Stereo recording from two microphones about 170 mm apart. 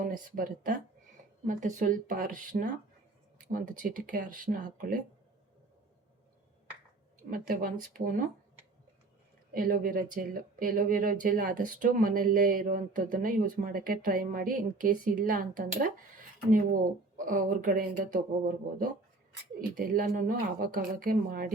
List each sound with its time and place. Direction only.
0.0 s speech: 55° right (ahead or behind)
7.3 s speech: 55° right (ahead or behind)
9.5 s speech: 55° right (ahead or behind)